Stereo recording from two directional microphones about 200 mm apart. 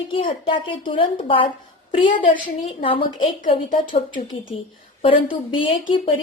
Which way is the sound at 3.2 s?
35° left (ahead or behind).